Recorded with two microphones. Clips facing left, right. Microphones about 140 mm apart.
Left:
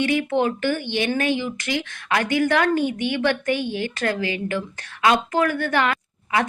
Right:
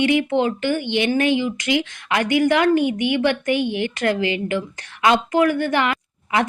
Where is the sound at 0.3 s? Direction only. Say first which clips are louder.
Right 1 dB; 20° right (ahead or behind).